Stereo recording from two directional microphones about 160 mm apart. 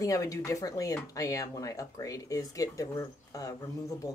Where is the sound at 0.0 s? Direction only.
20° left (ahead or behind).